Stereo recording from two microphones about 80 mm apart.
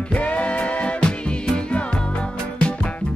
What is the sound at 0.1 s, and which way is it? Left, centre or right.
Music, centre.